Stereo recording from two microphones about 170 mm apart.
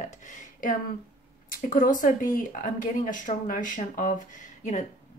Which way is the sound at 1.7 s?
55° left (ahead or behind).